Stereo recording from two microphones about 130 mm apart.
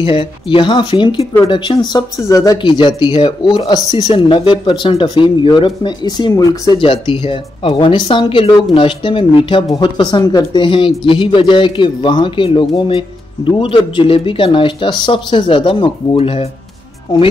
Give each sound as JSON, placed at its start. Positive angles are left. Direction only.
{"t": 0.0, "sound": "a man's voice", "side_deg": 45}
{"t": 6.8, "sound": "a man's voice", "side_deg": 40}